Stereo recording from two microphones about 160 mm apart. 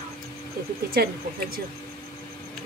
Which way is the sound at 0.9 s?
75° right (ahead or behind).